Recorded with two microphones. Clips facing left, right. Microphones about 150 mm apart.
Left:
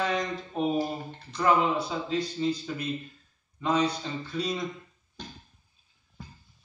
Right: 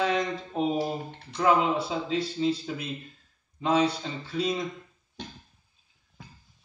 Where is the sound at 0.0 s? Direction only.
20° right (ahead or behind).